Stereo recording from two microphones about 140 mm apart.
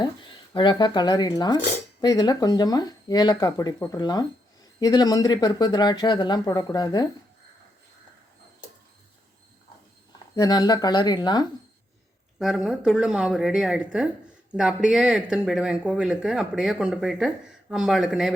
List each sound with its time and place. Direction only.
0.5 s speech: 35° left (ahead or behind)
10.3 s speech: 25° left (ahead or behind)
12.4 s speech: centre (ahead or behind)